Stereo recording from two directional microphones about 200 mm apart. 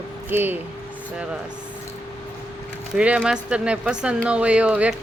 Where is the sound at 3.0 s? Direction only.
5° right (ahead or behind).